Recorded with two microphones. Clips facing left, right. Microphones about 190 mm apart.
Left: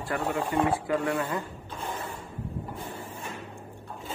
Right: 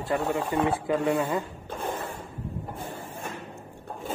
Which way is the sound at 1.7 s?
50° right (ahead or behind).